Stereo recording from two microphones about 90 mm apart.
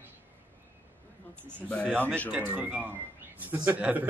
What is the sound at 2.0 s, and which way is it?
Speech, 15° left (ahead or behind).